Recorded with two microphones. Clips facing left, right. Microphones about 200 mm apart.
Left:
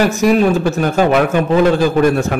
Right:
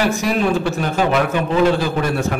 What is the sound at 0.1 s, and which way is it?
A man's voice, 40° left (ahead or behind).